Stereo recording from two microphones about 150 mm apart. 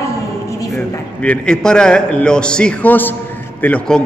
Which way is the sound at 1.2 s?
5° left (ahead or behind).